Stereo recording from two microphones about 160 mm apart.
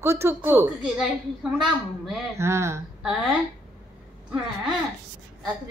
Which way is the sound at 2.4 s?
15° right (ahead or behind).